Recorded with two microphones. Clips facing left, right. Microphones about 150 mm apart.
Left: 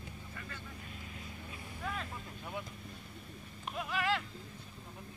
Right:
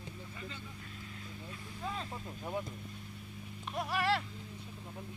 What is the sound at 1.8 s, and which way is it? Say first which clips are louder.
Speech: right 1 dB; 30° right (ahead or behind).